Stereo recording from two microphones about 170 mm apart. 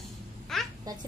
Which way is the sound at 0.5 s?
Centre (ahead or behind).